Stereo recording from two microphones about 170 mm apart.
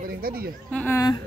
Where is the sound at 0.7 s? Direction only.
10° left (ahead or behind).